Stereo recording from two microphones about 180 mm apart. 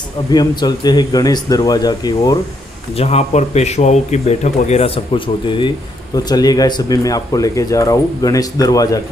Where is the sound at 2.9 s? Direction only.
35° left (ahead or behind); by 9.0 s 20° left (ahead or behind).